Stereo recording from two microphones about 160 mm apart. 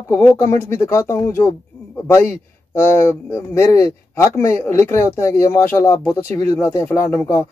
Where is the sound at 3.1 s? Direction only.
15° left (ahead or behind).